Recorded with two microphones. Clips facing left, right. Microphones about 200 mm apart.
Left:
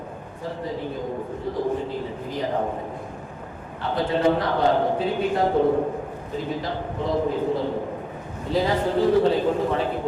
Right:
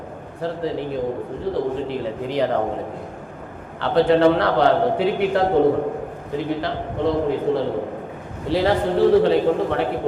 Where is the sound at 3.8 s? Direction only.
75° right (ahead or behind).